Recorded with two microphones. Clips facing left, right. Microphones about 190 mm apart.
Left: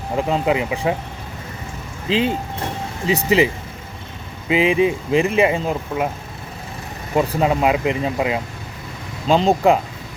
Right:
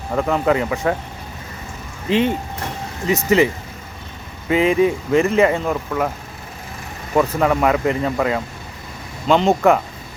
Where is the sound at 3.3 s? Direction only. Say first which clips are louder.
Right 2 dB; 15° left (ahead or behind).